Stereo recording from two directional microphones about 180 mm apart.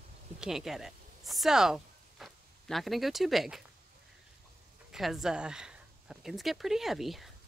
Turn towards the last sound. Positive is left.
turn(degrees=0)  # may be behind; listen again after turning